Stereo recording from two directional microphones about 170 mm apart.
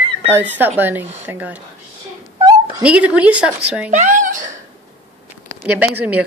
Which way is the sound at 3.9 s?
50° right (ahead or behind).